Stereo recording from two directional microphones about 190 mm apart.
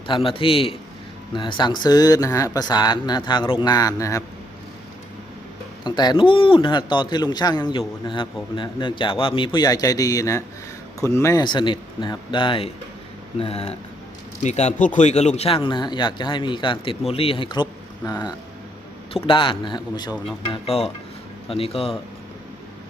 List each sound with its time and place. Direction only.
0.1 s a man's voice: 30° left (ahead or behind)
5.8 s a man's voice: 25° left (ahead or behind)